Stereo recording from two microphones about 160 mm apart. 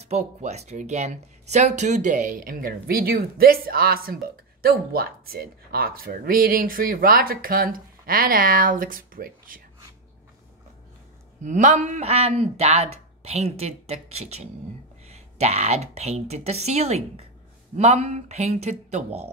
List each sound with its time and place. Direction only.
0.0 s speech: 45° right (ahead or behind); by 9.6 s 60° right (ahead or behind)
11.4 s a woman's voice: 50° right (ahead or behind)